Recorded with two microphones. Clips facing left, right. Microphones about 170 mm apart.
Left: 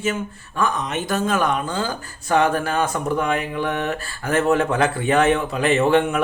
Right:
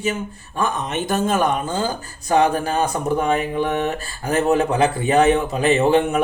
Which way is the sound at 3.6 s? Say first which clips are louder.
Right 2 dB; 25° right (ahead or behind).